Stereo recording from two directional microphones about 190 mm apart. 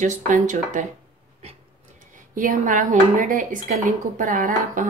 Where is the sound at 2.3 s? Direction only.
45° right (ahead or behind).